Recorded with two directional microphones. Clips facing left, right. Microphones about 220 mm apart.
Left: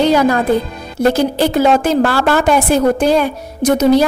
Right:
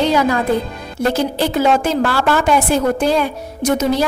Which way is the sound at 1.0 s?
40° left (ahead or behind).